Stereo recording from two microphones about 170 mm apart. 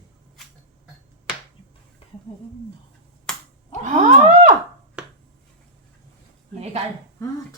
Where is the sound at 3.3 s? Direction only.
5° left (ahead or behind).